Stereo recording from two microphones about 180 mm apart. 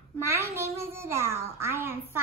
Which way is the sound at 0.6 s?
15° right (ahead or behind).